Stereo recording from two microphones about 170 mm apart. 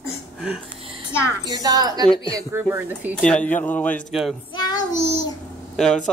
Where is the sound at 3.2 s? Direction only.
5° left (ahead or behind).